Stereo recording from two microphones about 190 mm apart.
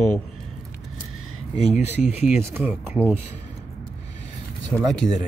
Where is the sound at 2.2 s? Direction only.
10° right (ahead or behind).